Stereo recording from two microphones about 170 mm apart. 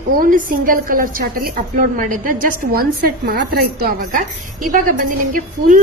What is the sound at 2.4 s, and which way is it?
A woman's voice, 60° right (ahead or behind).